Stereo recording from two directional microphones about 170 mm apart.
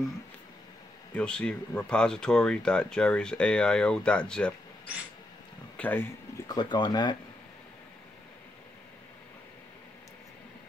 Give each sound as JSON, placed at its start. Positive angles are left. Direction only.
{"t": 1.1, "sound": "speech", "side_deg": 5}
{"t": 5.8, "sound": "speech", "side_deg": 10}
{"t": 6.4, "sound": "speech", "side_deg": 25}